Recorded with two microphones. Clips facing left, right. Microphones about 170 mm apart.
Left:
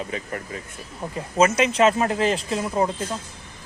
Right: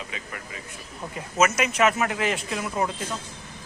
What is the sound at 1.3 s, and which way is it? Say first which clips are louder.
Speech: left 4 dB; 30° left (ahead or behind).